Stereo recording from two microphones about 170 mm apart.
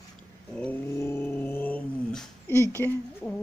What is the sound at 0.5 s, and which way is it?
Dog, 10° left (ahead or behind).